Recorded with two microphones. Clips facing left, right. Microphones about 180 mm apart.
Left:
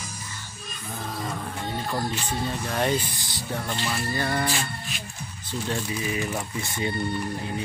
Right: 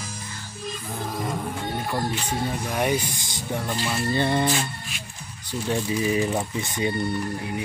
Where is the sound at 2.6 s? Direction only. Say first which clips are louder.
Even; 10° right (ahead or behind).